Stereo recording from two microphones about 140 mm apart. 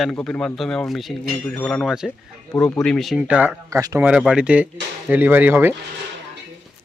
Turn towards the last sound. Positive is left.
turn(degrees=-15)  # may be behind; listen again after turning